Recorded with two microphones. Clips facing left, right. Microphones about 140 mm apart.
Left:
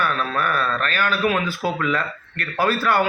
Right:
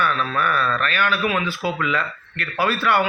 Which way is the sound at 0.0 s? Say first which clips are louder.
Right 1 dB; 40° left (ahead or behind).